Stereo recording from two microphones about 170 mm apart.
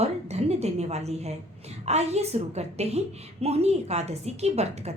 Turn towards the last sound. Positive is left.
turn(degrees=-40)  # may be behind; listen again after turning